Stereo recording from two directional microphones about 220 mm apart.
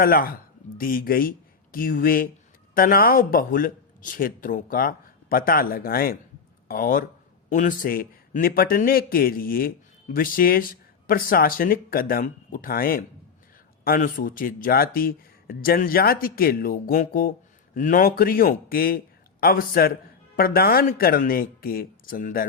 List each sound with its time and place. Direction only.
0.0 s speech: 40° left (ahead or behind)